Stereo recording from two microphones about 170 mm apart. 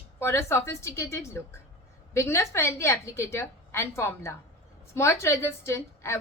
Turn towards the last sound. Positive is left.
turn(degrees=15)  # may be behind; listen again after turning